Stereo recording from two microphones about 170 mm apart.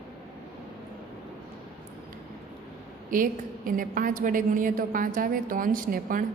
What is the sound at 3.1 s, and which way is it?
A woman's voice, 55° right (ahead or behind).